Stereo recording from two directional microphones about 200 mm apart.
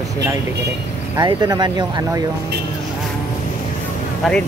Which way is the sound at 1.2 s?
20° right (ahead or behind).